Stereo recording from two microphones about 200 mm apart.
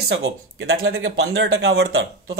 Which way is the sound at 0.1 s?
60° right (ahead or behind).